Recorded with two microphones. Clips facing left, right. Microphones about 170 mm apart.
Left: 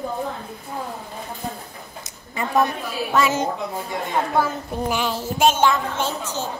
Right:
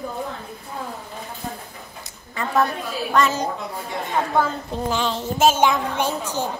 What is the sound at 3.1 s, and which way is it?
Speech, 5° left (ahead or behind).